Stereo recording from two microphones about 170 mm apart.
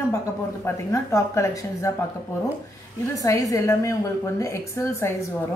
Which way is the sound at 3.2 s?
20° left (ahead or behind).